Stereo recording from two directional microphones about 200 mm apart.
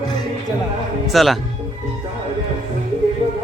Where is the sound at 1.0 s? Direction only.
Centre (ahead or behind).